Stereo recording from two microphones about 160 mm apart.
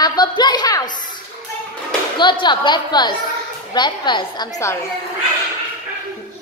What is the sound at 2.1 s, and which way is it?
A woman's voice, 30° left (ahead or behind).